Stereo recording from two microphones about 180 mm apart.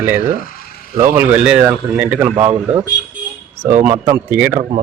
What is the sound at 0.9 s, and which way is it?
Speech, 15° right (ahead or behind).